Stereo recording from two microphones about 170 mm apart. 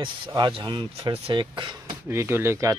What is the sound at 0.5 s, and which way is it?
Speech, 30° right (ahead or behind).